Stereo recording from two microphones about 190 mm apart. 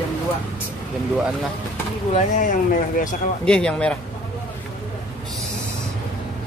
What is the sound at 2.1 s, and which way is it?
Speech, 40° left (ahead or behind).